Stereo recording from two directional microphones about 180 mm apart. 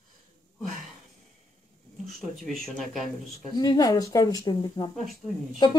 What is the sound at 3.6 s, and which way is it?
Speech, 20° left (ahead or behind).